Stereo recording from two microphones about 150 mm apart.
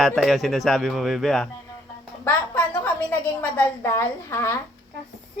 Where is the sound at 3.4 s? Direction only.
15° left (ahead or behind).